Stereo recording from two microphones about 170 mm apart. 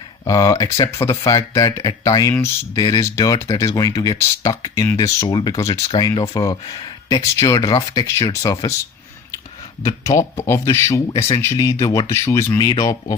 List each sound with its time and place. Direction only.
0.3 s speech: 20° left (ahead or behind)
9.8 s speech: 15° left (ahead or behind)